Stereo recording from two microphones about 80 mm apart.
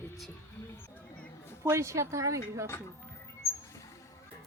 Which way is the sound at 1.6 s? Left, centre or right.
Right.